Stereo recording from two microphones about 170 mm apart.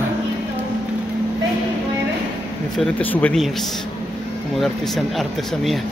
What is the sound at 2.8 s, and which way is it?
Speech, 5° left (ahead or behind).